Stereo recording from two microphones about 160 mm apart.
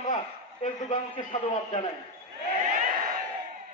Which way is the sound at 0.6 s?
50° left (ahead or behind).